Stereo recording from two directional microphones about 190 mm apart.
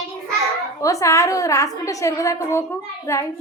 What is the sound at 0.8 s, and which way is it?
A woman's voice, 15° left (ahead or behind).